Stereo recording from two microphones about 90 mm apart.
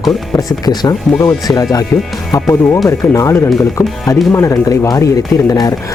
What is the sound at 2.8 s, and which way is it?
Speech, 35° left (ahead or behind).